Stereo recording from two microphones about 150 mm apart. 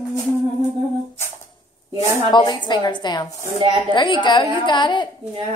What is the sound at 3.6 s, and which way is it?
Speech, 30° right (ahead or behind).